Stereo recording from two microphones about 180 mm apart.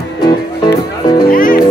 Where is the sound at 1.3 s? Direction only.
50° left (ahead or behind).